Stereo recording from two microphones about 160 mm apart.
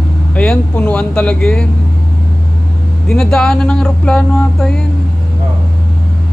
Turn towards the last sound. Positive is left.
turn(degrees=5)  # may be behind; listen again after turning